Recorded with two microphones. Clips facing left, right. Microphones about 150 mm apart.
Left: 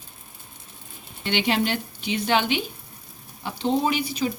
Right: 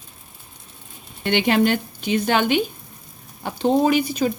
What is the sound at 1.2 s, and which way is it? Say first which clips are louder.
Speech: right 5 dB; 50° right (ahead or behind).